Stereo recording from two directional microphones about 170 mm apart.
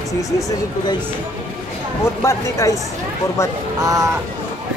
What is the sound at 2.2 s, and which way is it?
Speech, 15° left (ahead or behind).